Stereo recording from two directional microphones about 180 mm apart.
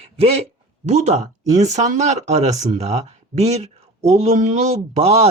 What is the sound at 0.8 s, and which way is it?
Speech, 40° right (ahead or behind).